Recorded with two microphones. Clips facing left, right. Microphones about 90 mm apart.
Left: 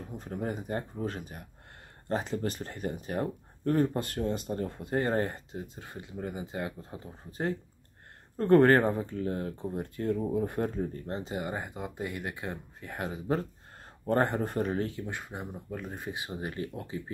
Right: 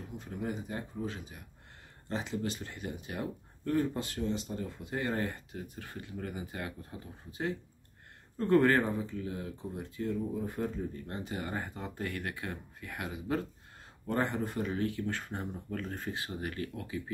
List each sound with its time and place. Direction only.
0.2 s speech: 45° left (ahead or behind); by 7.0 s 25° left (ahead or behind)
7.2 s speech: 40° left (ahead or behind); by 10.7 s 65° left (ahead or behind)
11.1 s speech: 25° left (ahead or behind)
14.0 s speech: 50° left (ahead or behind)
14.9 s speech: 20° left (ahead or behind)